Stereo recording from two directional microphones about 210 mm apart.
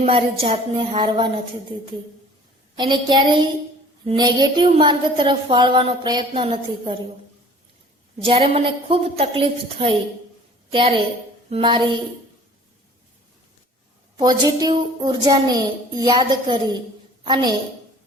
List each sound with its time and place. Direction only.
0.0 s a woman's voice: 25° right (ahead or behind)
2.7 s a woman's voice: 20° right (ahead or behind)
8.2 s a woman's voice: 25° right (ahead or behind)
14.2 s a woman's voice: 20° right (ahead or behind)